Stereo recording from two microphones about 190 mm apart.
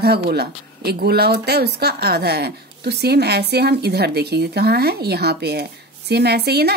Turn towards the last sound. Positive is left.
turn(degrees=-60)  # may be behind; listen again after turning